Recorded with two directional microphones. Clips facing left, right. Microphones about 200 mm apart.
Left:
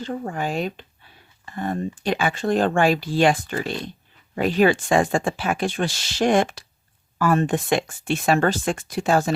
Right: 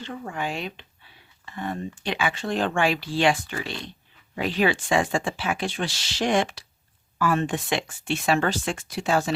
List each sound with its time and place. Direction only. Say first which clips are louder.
0.0 s speech: left 4 dB; 40° left (ahead or behind)